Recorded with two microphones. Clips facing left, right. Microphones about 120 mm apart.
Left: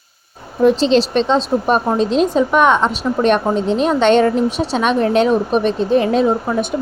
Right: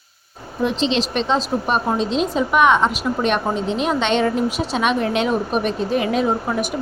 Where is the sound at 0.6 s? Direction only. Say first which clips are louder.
Left 8 dB; 40° left (ahead or behind).